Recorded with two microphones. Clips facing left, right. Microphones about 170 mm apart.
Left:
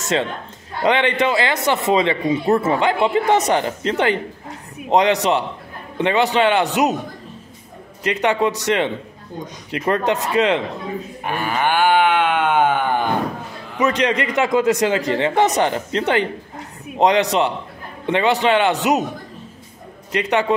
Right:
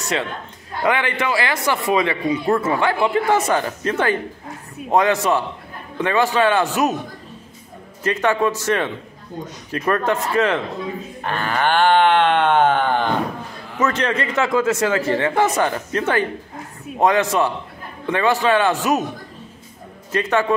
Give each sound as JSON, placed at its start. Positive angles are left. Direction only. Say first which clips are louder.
{"t": 0.0, "sound": "a man's voice", "louder": "left 3 dB", "side_deg": 25}
{"t": 8.0, "sound": "a man's voice", "louder": "even", "side_deg": 15}
{"t": 20.1, "sound": "a man's voice", "louder": "even", "side_deg": 15}